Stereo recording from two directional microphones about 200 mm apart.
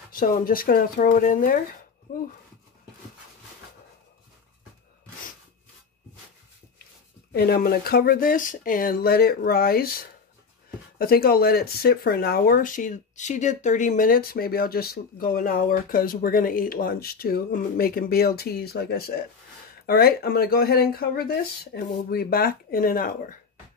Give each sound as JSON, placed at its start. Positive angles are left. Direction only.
{"t": 0.1, "sound": "speech", "side_deg": 45}
{"t": 7.3, "sound": "speech", "side_deg": 50}